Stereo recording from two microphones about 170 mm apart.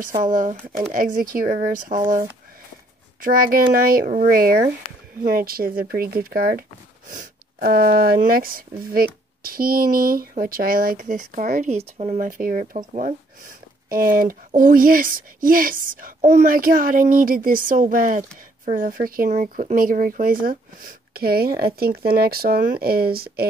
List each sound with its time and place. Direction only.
0.2 s speech: 50° right (ahead or behind)
12.2 s speech: 55° right (ahead or behind)
14.1 s speech: 55° right (ahead or behind)